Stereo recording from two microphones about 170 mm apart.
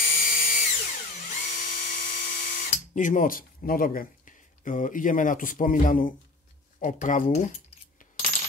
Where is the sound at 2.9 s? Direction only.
50° left (ahead or behind).